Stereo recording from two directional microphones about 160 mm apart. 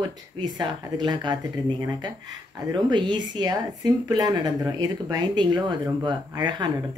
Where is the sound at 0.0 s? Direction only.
25° right (ahead or behind).